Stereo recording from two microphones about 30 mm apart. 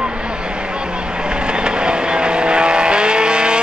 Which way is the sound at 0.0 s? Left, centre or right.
Right.